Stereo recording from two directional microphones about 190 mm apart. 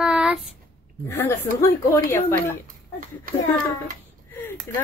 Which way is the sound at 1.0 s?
10° left (ahead or behind).